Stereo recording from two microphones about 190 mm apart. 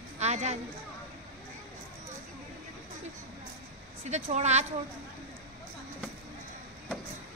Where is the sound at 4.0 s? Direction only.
35° right (ahead or behind).